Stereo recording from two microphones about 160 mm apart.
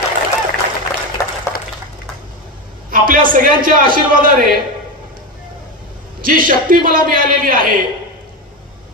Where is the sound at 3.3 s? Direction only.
60° right (ahead or behind).